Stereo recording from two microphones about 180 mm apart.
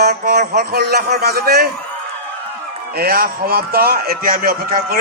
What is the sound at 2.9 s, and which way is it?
Mantra, 55° right (ahead or behind).